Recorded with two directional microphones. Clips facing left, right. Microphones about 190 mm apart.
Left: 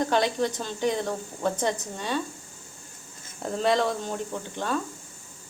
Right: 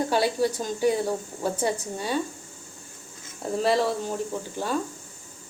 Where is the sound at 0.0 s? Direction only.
10° right (ahead or behind).